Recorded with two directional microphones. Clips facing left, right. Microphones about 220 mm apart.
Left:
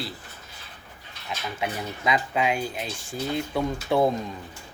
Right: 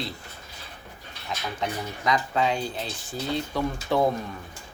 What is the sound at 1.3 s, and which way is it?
Speech, 5° left (ahead or behind).